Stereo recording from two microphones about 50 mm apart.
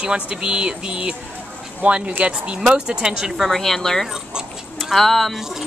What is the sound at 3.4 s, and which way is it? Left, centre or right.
A woman's voice, centre.